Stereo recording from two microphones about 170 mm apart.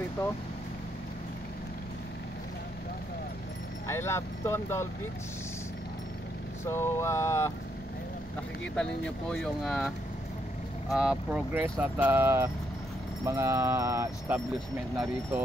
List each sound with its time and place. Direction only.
3.8 s speech: 15° left (ahead or behind)
6.6 s speech: 15° left (ahead or behind)
8.7 s speech: 5° left (ahead or behind); by 14.4 s 15° right (ahead or behind)